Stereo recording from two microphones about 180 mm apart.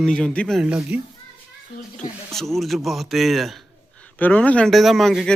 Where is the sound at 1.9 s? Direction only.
Centre (ahead or behind).